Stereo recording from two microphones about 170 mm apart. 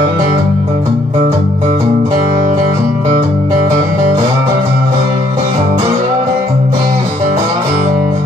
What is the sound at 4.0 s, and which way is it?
Music, 20° right (ahead or behind).